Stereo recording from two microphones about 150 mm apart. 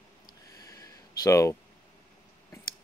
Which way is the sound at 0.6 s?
20° left (ahead or behind).